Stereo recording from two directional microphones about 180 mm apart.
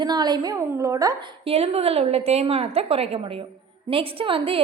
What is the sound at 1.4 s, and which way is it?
A woman's voice, 35° right (ahead or behind).